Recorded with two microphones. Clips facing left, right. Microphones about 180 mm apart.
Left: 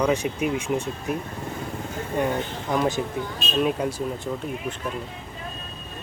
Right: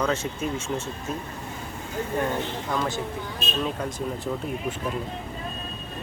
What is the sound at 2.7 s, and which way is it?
Speech, 20° left (ahead or behind).